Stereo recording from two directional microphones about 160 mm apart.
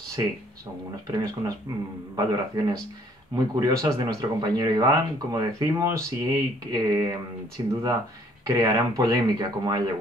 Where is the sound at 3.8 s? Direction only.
25° right (ahead or behind).